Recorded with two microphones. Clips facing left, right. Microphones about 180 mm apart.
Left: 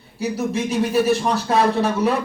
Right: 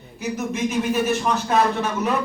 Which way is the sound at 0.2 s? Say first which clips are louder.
Left 2 dB; 35° left (ahead or behind).